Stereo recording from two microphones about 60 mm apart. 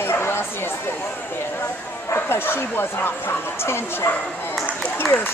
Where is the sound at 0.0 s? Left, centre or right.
Left.